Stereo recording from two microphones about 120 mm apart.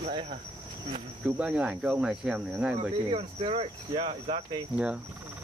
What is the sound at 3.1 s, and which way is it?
Cricket, 50° right (ahead or behind).